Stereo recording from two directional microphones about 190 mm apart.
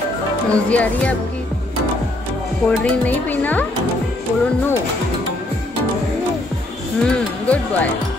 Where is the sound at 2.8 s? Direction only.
10° left (ahead or behind).